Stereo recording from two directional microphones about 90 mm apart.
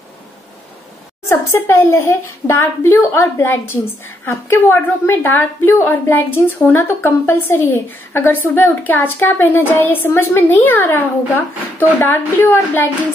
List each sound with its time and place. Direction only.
1.3 s a woman's voice: 25° left (ahead or behind)